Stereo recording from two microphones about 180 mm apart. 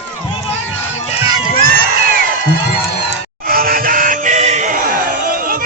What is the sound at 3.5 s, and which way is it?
Music, 55° right (ahead or behind).